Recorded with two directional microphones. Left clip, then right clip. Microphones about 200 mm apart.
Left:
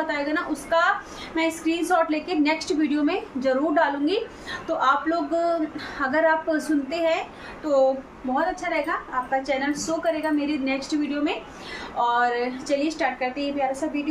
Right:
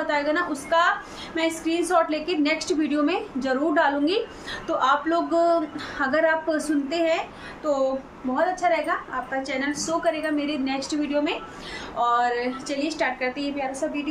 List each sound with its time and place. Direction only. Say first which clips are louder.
0.0 s a woman's voice: right 2 dB; 5° right (ahead or behind)
8.5 s a woman's voice: right 3 dB; centre (ahead or behind)